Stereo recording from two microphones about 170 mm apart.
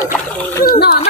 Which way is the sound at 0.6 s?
70° left (ahead or behind).